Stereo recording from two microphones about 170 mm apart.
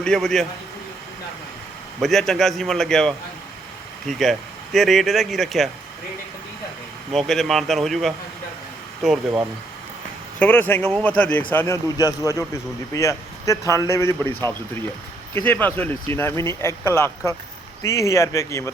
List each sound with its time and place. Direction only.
0.0 s speech: 5° left (ahead or behind)
2.0 s speech: centre (ahead or behind)
7.1 s speech: centre (ahead or behind)
10.4 s speech: 10° left (ahead or behind)